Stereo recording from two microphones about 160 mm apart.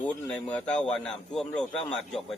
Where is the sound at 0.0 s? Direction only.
10° left (ahead or behind).